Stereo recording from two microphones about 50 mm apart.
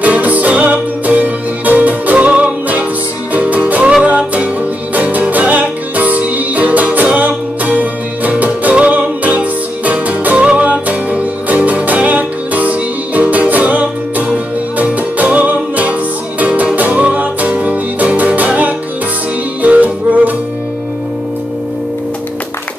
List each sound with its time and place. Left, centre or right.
0.0 s music: right
4.9 s music: right
19.6 s music: right